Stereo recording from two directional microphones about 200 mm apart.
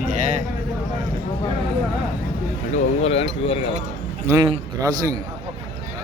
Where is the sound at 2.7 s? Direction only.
30° left (ahead or behind).